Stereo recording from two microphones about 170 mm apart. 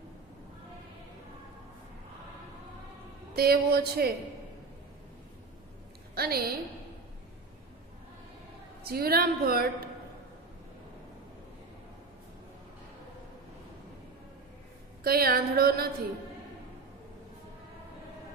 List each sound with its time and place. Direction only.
3.3 s a woman's voice: 65° right (ahead or behind)
6.1 s a woman's voice: 65° right (ahead or behind)
8.8 s a woman's voice: 65° right (ahead or behind)
15.0 s a woman's voice: 60° right (ahead or behind)